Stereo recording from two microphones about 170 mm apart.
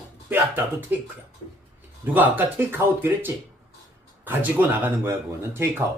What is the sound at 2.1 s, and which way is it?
Speech, 10° right (ahead or behind).